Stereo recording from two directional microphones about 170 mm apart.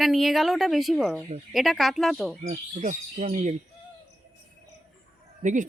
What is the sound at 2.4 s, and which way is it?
Speech, 45° right (ahead or behind).